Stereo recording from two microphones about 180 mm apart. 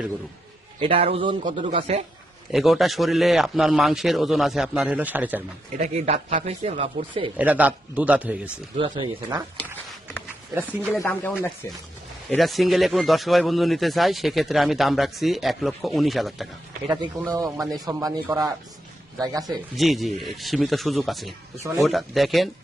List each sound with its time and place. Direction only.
0.8 s speech: 30° right (ahead or behind)
1.5 s speech: 40° right (ahead or behind)
2.5 s speech: centre (ahead or behind)
5.7 s speech: 40° right (ahead or behind)
7.3 s a man's voice: 10° right (ahead or behind)
8.7 s speech: 30° right (ahead or behind)
10.5 s a man's voice: 10° right (ahead or behind)
11.0 s speech: 10° left (ahead or behind)
12.4 s speech: centre (ahead or behind)
17.3 s speech: 20° right (ahead or behind)
19.7 s speech: centre (ahead or behind)